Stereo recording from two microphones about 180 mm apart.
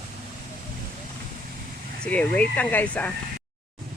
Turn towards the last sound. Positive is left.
turn(degrees=10)  # may be behind; listen again after turning